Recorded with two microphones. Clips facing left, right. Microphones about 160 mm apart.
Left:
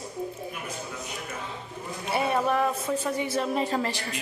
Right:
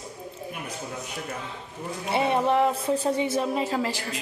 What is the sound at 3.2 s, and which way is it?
Speech, 20° right (ahead or behind).